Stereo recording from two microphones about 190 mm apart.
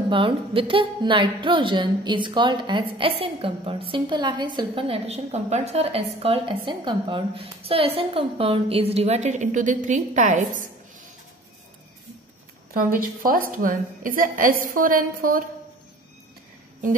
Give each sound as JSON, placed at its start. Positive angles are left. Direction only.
{"t": 0.1, "sound": "a woman's voice", "side_deg": -25}
{"t": 12.7, "sound": "a woman's voice", "side_deg": -50}